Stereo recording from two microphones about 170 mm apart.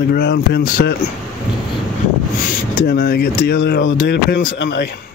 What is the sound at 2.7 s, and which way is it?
Speech, 60° left (ahead or behind).